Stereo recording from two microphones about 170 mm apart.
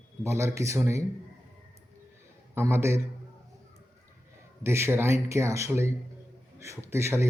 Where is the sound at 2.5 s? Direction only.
15° right (ahead or behind).